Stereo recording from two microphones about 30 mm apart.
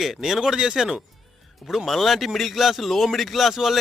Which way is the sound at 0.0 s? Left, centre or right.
Centre.